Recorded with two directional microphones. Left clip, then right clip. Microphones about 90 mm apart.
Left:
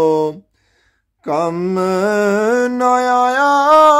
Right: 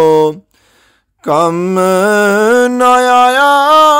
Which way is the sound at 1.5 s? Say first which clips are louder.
Right 6 dB; 40° right (ahead or behind).